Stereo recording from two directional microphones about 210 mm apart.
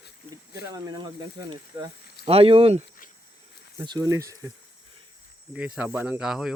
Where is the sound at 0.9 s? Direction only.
20° right (ahead or behind).